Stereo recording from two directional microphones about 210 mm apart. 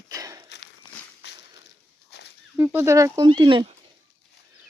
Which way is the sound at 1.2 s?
55° left (ahead or behind).